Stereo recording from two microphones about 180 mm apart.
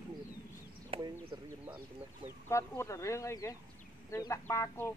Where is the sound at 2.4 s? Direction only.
15° left (ahead or behind).